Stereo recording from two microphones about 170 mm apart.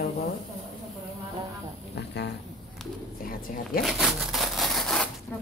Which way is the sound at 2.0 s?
90° left.